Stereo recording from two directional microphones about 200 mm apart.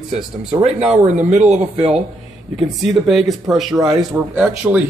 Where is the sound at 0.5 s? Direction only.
30° right (ahead or behind).